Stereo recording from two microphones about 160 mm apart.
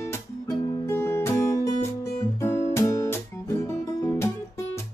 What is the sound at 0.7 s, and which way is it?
Music, 15° left (ahead or behind).